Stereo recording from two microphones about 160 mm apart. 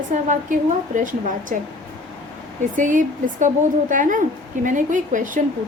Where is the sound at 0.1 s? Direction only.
50° right (ahead or behind).